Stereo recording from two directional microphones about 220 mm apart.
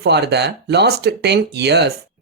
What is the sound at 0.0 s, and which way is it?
Speech, 50° right (ahead or behind).